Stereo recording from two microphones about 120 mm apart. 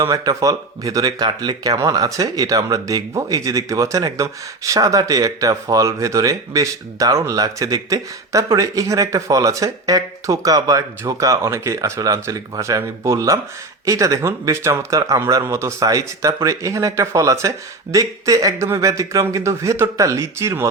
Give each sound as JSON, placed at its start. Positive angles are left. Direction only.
{"t": 0.0, "sound": "speech", "side_deg": -30}